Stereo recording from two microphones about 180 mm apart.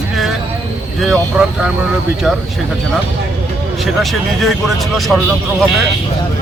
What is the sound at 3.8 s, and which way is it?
Speech, centre (ahead or behind).